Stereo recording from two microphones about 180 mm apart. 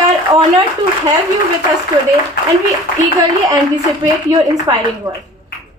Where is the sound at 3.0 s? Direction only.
25° right (ahead or behind).